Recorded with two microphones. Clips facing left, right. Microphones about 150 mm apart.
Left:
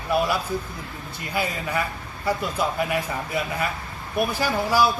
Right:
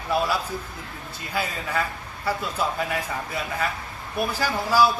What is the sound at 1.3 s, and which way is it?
Speech, 15° left (ahead or behind).